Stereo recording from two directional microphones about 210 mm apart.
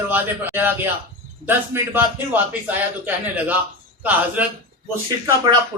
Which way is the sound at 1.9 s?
10° right (ahead or behind).